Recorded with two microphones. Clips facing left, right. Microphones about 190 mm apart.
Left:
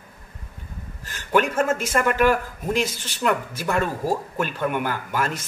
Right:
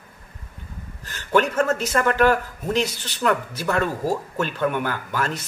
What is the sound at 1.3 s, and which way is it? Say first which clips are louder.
Speech: right 1 dB; 10° left (ahead or behind).